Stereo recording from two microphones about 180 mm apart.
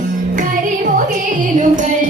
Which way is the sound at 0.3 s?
45° right (ahead or behind).